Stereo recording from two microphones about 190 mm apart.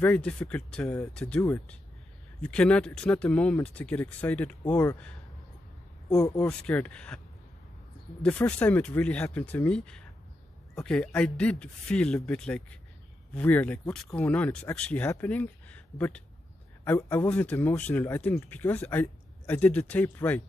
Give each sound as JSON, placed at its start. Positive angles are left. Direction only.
{"t": 0.0, "sound": "speech", "side_deg": 5}
{"t": 8.2, "sound": "speech", "side_deg": 5}